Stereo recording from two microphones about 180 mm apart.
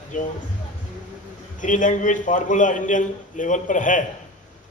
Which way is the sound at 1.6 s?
45° left (ahead or behind).